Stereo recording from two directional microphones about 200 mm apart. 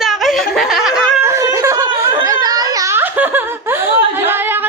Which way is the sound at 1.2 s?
15° right (ahead or behind).